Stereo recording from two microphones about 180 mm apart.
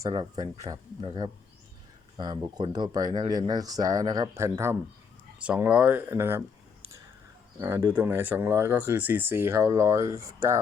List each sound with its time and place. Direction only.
0.0 s speech: 25° right (ahead or behind)
7.6 s speech: 15° right (ahead or behind)